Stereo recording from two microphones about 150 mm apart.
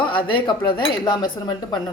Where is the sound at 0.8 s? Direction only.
30° left (ahead or behind).